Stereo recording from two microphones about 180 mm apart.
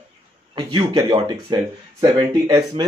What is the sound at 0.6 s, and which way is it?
Speech, 25° right (ahead or behind).